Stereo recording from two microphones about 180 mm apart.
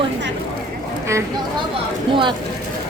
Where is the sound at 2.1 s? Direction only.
25° right (ahead or behind).